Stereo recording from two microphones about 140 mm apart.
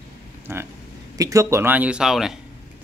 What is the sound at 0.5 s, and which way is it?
Speech, 20° right (ahead or behind).